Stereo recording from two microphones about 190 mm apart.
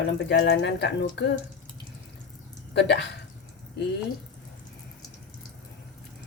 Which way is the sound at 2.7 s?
65° left (ahead or behind).